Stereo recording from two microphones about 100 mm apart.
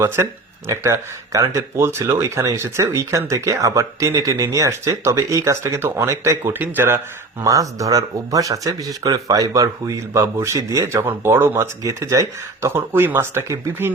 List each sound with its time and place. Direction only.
0.2 s speech: 30° right (ahead or behind)
7.4 s speech: 35° right (ahead or behind)